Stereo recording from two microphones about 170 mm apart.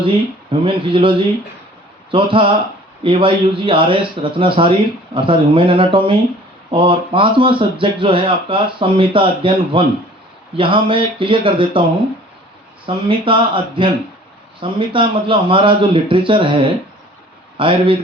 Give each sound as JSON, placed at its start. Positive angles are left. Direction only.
{"t": 0.6, "sound": "speech", "side_deg": -30}
{"t": 12.8, "sound": "speech", "side_deg": -30}